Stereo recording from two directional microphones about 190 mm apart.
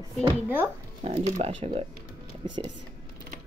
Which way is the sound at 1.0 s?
30° right (ahead or behind).